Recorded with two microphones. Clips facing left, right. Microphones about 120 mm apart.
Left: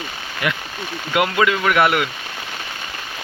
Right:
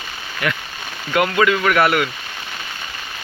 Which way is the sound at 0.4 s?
20° left (ahead or behind).